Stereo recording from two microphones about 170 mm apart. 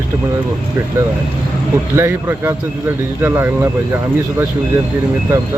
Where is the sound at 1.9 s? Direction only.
15° right (ahead or behind).